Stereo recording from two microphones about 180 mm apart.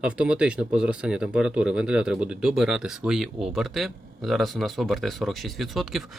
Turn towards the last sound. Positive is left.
turn(degrees=0)  # may be behind; listen again after turning